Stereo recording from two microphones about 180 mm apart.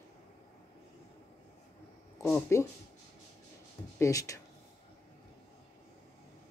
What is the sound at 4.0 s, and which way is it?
Speech, 20° left (ahead or behind).